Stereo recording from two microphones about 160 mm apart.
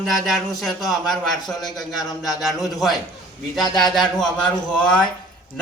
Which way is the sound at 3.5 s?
Centre (ahead or behind).